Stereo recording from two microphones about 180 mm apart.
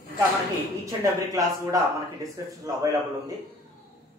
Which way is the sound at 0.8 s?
20° right (ahead or behind).